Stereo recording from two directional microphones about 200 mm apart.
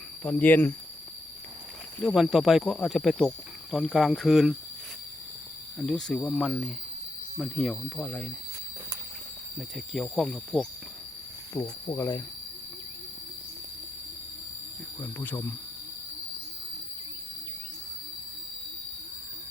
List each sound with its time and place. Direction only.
0.2 s cricket: 5° left (ahead or behind)
2.0 s speech: centre (ahead or behind)
5.8 s speech: 5° left (ahead or behind)
9.6 s speech: centre (ahead or behind)
11.6 s cricket: 20° left (ahead or behind)
15.0 s cricket: 15° left (ahead or behind)